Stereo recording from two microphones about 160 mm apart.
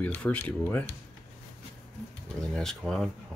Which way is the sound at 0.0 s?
10° left (ahead or behind).